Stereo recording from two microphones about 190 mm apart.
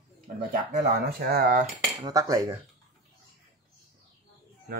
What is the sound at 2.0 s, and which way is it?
Speech, 15° right (ahead or behind).